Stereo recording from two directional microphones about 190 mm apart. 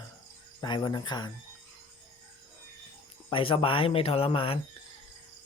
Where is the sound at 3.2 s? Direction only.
30° left (ahead or behind).